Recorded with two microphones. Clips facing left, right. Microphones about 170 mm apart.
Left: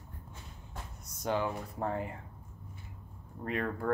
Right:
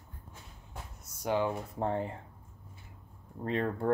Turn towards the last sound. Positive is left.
turn(degrees=-30)  # may be behind; listen again after turning